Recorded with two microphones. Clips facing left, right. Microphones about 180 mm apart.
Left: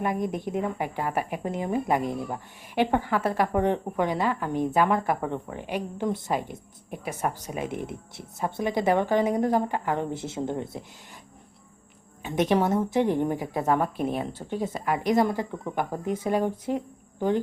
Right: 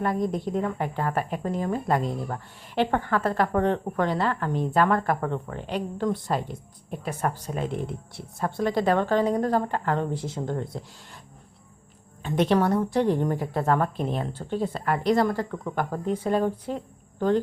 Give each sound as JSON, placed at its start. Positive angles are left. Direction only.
{"t": 0.0, "sound": "a woman's voice", "side_deg": 20}
{"t": 12.2, "sound": "a woman's voice", "side_deg": 15}